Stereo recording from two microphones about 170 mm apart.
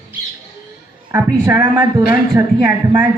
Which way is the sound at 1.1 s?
15° right (ahead or behind).